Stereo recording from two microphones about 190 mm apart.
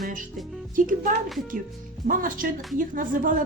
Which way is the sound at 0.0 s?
45° right (ahead or behind).